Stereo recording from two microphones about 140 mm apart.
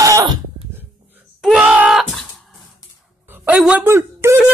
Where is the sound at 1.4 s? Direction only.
5° right (ahead or behind).